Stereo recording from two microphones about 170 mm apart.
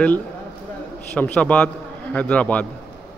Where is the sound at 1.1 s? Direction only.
5° left (ahead or behind).